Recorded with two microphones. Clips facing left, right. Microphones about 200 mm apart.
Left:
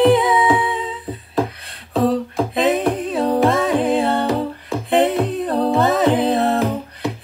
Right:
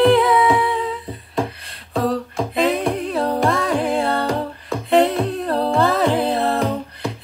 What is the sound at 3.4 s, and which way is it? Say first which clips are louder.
Music: left 3 dB; 15° left (ahead or behind).